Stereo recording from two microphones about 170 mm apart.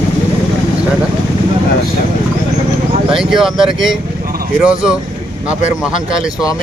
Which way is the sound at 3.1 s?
5° right (ahead or behind).